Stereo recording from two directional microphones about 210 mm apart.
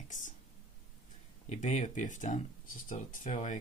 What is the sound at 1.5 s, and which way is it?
Speech, 35° left (ahead or behind).